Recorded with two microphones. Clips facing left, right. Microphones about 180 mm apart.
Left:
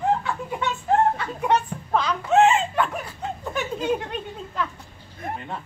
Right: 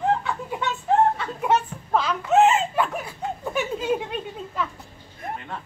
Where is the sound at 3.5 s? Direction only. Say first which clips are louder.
Even; 5° right (ahead or behind).